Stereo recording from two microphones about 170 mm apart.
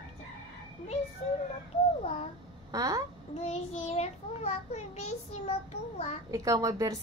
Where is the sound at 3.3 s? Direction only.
40° left (ahead or behind).